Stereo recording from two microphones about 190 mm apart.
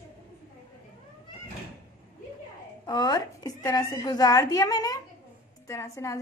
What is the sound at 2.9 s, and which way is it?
A woman's voice, 20° left (ahead or behind).